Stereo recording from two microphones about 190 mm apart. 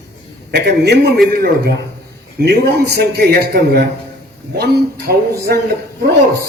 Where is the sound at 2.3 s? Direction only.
55° right (ahead or behind).